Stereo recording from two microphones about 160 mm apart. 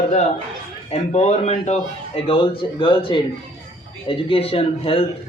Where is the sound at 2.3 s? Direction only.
35° left (ahead or behind).